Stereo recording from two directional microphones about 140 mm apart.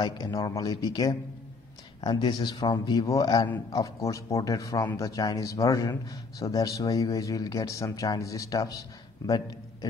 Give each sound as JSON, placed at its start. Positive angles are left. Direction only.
{"t": 0.0, "sound": "a man's voice", "side_deg": 30}